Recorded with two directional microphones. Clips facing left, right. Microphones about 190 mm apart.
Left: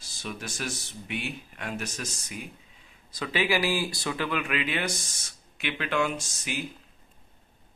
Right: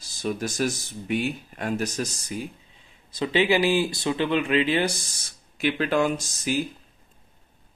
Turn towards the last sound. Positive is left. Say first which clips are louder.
# right 8 dB
turn(degrees=-35)  # may be behind; listen again after turning